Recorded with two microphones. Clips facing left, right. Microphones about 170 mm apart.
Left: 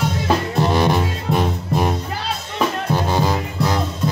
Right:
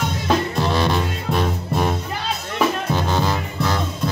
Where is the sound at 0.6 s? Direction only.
15° left (ahead or behind).